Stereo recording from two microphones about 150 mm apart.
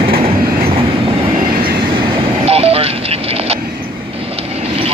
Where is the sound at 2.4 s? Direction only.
40° right (ahead or behind).